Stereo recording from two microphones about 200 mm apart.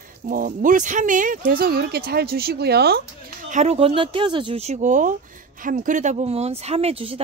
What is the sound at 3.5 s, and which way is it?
Speech, 35° right (ahead or behind).